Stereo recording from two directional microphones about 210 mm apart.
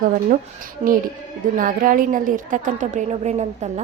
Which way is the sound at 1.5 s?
40° right (ahead or behind).